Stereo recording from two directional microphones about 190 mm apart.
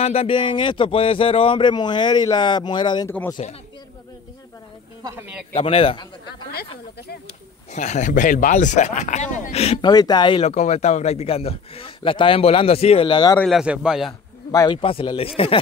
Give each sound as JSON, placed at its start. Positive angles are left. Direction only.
{"t": 0.0, "sound": "speech", "side_deg": 30}
{"t": 3.1, "sound": "speech", "side_deg": 10}
{"t": 5.5, "sound": "speech", "side_deg": 30}
{"t": 7.7, "sound": "speech", "side_deg": 40}
{"t": 13.4, "sound": "speech", "side_deg": 0}
{"t": 14.5, "sound": "speech", "side_deg": 15}
{"t": 14.8, "sound": "speech", "side_deg": 30}